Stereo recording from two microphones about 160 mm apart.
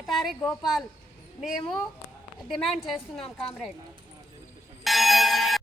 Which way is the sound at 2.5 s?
Centre (ahead or behind).